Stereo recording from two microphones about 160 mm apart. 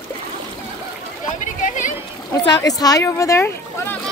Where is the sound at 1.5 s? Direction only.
55° left (ahead or behind).